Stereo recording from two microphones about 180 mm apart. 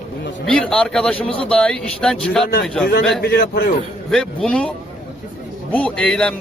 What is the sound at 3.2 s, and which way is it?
Speech, 60° left (ahead or behind).